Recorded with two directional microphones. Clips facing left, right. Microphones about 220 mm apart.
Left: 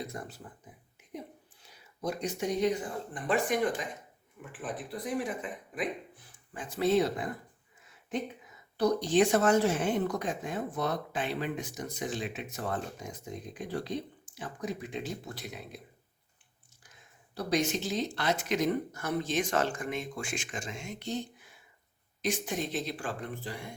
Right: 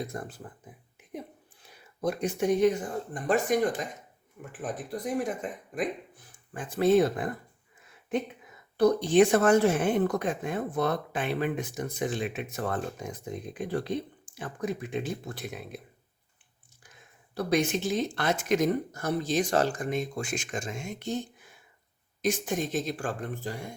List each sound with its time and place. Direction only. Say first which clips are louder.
0.1 s speech: right 4 dB; 50° right (ahead or behind)
1.6 s speech: right 5 dB; 55° right (ahead or behind)
8.8 s a woman's voice: right 4 dB; 55° right (ahead or behind)
17.3 s speech: right 3 dB; 55° right (ahead or behind)